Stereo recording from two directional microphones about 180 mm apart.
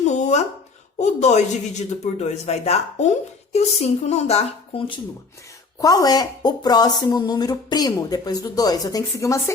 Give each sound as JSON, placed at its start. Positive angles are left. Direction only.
{"t": 0.0, "sound": "a sound", "side_deg": 40}
{"t": 0.9, "sound": "speech", "side_deg": 40}
{"t": 5.8, "sound": "speech", "side_deg": 20}